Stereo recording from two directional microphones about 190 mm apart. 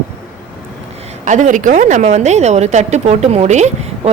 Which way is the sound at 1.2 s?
40° right (ahead or behind).